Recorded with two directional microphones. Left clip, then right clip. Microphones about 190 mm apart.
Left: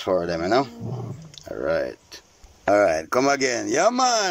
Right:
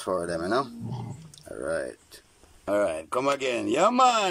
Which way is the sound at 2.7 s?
25° left (ahead or behind).